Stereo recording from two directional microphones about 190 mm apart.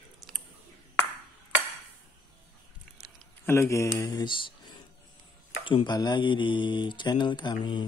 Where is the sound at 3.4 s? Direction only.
15° left (ahead or behind).